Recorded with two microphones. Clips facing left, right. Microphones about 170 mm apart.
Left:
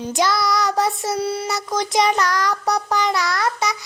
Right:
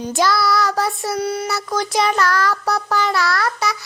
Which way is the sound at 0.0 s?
20° left (ahead or behind).